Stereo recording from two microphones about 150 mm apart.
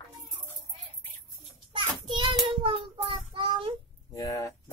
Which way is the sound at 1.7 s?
30° right (ahead or behind).